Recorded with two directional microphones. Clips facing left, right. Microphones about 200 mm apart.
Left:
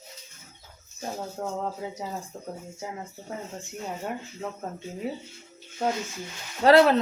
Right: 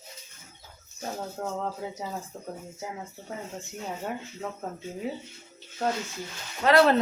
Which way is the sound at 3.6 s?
Centre (ahead or behind).